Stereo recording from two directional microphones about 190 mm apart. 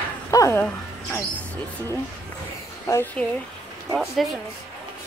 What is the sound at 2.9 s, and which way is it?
Speech, 10° left (ahead or behind).